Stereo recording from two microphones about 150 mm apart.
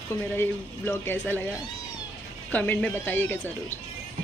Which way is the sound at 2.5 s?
10° left (ahead or behind).